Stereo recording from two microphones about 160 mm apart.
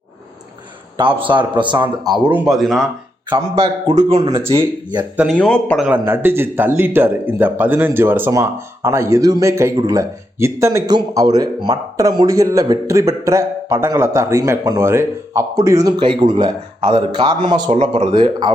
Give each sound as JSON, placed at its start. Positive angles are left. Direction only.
{"t": 0.9, "sound": "speech", "side_deg": -30}
{"t": 2.0, "sound": "speech", "side_deg": -5}
{"t": 3.2, "sound": "speech", "side_deg": -30}
{"t": 3.8, "sound": "speech", "side_deg": -40}
{"t": 5.1, "sound": "speech", "side_deg": -5}
{"t": 5.4, "sound": "a man's voice", "side_deg": 10}
{"t": 5.8, "sound": "speech", "side_deg": -10}
{"t": 17.7, "sound": "speech", "side_deg": -45}
{"t": 18.1, "sound": "speech", "side_deg": -30}